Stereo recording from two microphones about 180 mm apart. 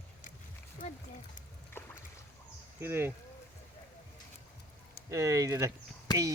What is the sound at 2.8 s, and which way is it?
Speech, 10° right (ahead or behind).